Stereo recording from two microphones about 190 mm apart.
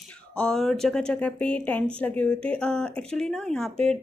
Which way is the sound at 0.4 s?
5° left (ahead or behind).